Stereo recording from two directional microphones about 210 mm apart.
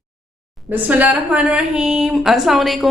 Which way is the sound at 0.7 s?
5° right (ahead or behind).